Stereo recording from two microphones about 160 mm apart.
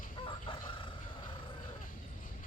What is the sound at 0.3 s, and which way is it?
Chicken, 30° left (ahead or behind).